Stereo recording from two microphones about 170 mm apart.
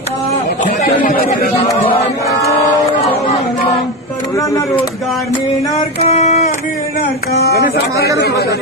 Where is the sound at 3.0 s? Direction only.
30° left (ahead or behind).